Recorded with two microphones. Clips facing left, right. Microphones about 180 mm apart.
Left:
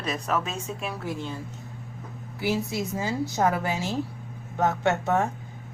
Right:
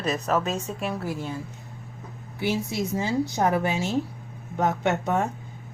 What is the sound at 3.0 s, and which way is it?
A woman's voice, 20° right (ahead or behind).